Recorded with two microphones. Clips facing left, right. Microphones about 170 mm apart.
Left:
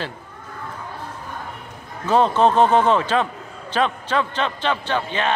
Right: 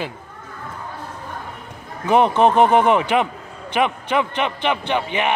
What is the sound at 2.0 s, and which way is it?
A man's voice, 15° right (ahead or behind).